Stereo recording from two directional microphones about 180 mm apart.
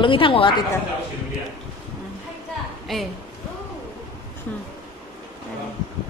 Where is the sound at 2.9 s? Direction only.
Centre (ahead or behind).